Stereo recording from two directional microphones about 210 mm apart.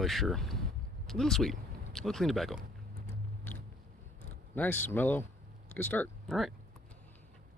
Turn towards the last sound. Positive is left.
turn(degrees=0)  # may be behind; listen again after turning